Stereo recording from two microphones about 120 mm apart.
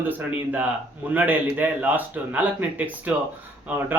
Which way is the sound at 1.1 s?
15° right (ahead or behind).